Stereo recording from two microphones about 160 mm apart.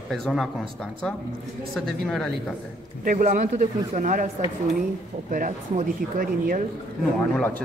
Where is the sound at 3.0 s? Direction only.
55° right (ahead or behind).